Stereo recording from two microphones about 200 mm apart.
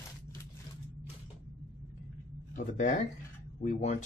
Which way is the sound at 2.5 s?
40° left (ahead or behind).